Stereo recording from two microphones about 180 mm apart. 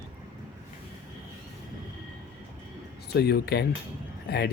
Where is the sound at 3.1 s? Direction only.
65° left (ahead or behind).